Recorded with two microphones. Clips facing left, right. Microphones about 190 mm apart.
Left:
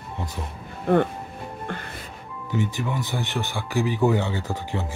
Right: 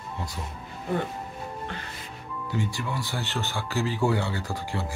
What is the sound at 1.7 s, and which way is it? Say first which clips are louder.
Music: left 4 dB; 50° left (ahead or behind).